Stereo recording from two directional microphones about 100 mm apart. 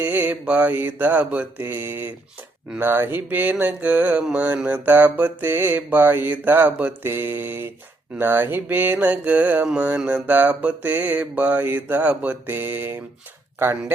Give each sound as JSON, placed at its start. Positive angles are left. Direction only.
{"t": 0.0, "sound": "mantra", "side_deg": -15}
{"t": 13.6, "sound": "speech", "side_deg": -20}